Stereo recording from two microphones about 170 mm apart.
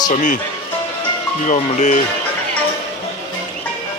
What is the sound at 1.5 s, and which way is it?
Speech, 45° left (ahead or behind).